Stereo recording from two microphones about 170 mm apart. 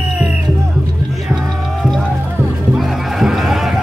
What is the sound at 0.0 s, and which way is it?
Music, 15° right (ahead or behind).